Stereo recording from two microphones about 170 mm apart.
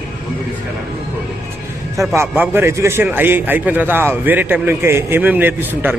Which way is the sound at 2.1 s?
15° right (ahead or behind).